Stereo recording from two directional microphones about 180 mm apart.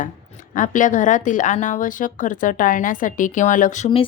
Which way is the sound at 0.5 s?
45° left (ahead or behind).